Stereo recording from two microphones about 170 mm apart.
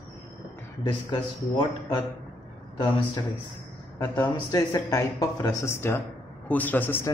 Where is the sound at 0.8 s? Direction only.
25° left (ahead or behind).